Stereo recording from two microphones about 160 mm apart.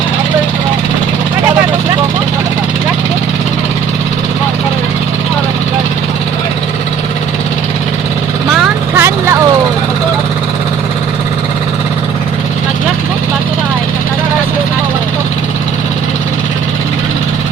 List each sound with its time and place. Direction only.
9.0 s vehicle: 15° right (ahead or behind)